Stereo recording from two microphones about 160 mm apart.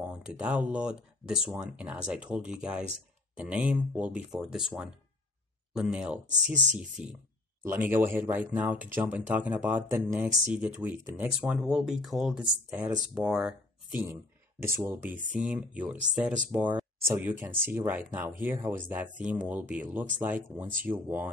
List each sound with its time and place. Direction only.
0.0 s speech: 5° right (ahead or behind)
6.2 s speech: 50° right (ahead or behind)
6.8 s speech: 5° right (ahead or behind)
14.6 s speech: 15° right (ahead or behind)